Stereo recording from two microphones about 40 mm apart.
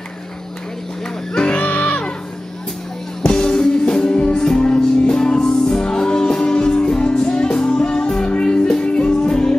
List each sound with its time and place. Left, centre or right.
1.3 s music: left
1.6 s music: left
3.2 s music: centre